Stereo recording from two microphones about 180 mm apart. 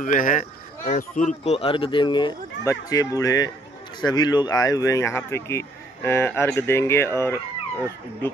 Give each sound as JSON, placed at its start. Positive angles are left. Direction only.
{"t": 0.0, "sound": "speech", "side_deg": 45}